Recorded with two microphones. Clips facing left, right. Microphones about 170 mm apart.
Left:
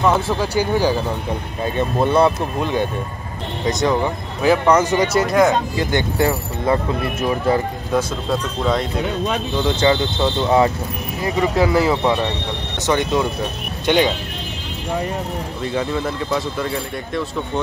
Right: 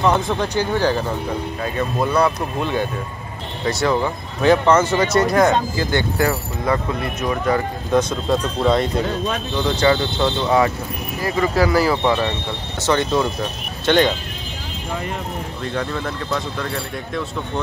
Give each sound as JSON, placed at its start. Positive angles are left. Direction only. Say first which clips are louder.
{"t": 0.0, "sound": "speech", "louder": "left 1 dB", "side_deg": 0}
{"t": 1.6, "sound": "speech", "louder": "left 4 dB", "side_deg": 25}
{"t": 5.2, "sound": "speech", "louder": "even", "side_deg": 0}
{"t": 5.8, "sound": "speech", "louder": "left 1 dB", "side_deg": 20}
{"t": 7.9, "sound": "speech", "louder": "right 3 dB", "side_deg": 5}
{"t": 9.0, "sound": "speech", "louder": "left 1 dB", "side_deg": 20}
{"t": 12.0, "sound": "speech", "louder": "even", "side_deg": 0}
{"t": 12.7, "sound": "speech", "louder": "even", "side_deg": 15}
{"t": 15.6, "sound": "speech", "louder": "left 3 dB", "side_deg": 5}